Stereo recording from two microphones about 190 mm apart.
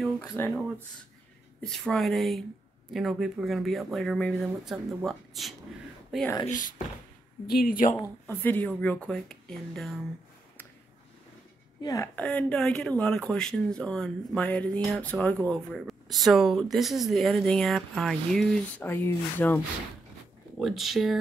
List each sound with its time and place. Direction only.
0.2 s speech: 15° left (ahead or behind)
1.6 s speech: 5° left (ahead or behind)
6.4 s speech: 40° left (ahead or behind)
7.9 s speech: 10° left (ahead or behind)
11.8 s speech: 15° left (ahead or behind)
12.3 s speech: 5° left (ahead or behind)
20.5 s speech: centre (ahead or behind)